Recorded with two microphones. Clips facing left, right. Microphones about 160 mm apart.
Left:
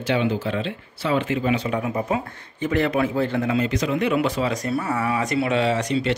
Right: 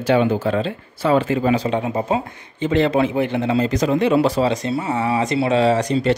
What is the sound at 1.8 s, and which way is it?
Speech, 25° right (ahead or behind).